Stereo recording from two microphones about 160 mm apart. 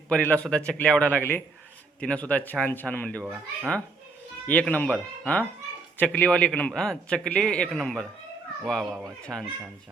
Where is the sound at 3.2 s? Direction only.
5° right (ahead or behind).